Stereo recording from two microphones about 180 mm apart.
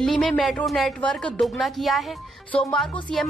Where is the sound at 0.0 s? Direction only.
Centre (ahead or behind).